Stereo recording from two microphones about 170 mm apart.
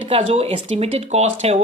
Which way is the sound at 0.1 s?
35° right (ahead or behind).